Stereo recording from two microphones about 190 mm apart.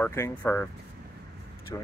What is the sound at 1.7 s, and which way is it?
Speech, 15° left (ahead or behind).